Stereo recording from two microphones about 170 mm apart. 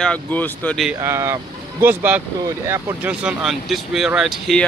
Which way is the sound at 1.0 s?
15° right (ahead or behind).